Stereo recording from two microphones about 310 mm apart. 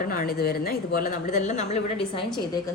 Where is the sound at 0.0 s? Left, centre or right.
Left.